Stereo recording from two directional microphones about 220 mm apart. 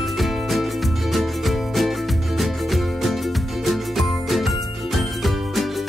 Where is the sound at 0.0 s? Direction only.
Centre (ahead or behind).